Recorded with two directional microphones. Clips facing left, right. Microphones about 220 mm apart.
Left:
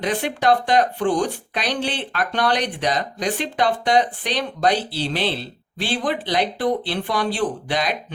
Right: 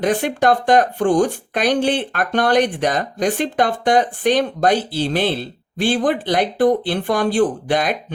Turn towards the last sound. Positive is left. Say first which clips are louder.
# right 4 dB
turn(degrees=-50)  # may be behind; listen again after turning